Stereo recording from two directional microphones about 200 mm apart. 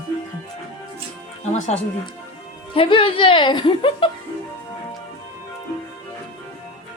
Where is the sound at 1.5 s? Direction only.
35° left (ahead or behind).